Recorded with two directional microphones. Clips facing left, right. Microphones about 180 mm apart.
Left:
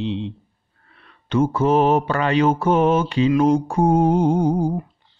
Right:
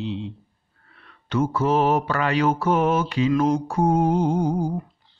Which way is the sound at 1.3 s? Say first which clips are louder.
Left 4 dB; 25° left (ahead or behind).